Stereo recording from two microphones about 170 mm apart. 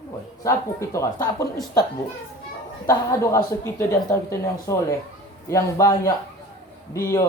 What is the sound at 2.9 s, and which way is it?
Speech, 20° left (ahead or behind).